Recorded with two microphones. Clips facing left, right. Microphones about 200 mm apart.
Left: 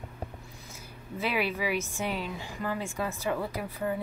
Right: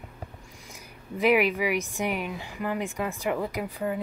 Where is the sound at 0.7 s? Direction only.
15° right (ahead or behind).